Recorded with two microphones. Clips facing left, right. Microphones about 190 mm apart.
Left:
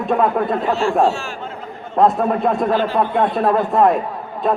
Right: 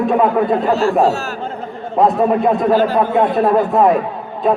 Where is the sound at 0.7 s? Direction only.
40° right (ahead or behind).